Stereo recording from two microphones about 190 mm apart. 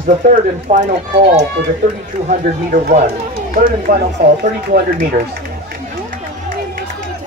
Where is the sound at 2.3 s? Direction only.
45° right (ahead or behind).